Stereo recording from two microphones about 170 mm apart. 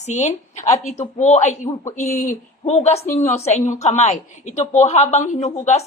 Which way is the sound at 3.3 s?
40° left (ahead or behind).